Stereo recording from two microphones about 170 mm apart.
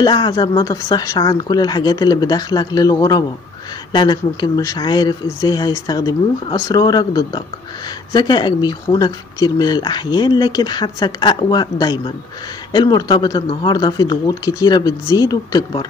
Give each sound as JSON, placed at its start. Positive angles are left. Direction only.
{"t": 0.0, "sound": "speech", "side_deg": 25}